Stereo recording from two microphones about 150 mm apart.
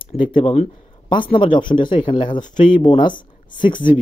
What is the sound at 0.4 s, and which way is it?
Speech, 40° left (ahead or behind).